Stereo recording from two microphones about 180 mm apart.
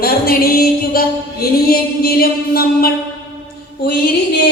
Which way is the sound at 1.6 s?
55° left (ahead or behind).